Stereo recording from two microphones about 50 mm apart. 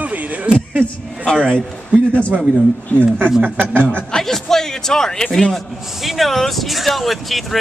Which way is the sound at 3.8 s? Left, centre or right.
Centre.